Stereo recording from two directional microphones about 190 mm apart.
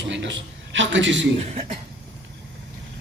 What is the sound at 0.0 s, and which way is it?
A man's voice, 70° right (ahead or behind).